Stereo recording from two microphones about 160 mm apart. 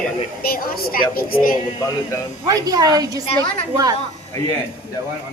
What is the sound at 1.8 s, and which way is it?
Speech, 20° left (ahead or behind).